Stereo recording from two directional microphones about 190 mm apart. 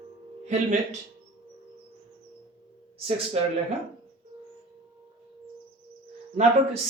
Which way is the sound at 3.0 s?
30° right (ahead or behind).